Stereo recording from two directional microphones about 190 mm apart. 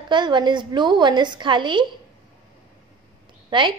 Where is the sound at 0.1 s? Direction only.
25° right (ahead or behind).